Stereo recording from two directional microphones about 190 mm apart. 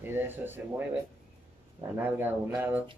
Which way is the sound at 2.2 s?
10° right (ahead or behind).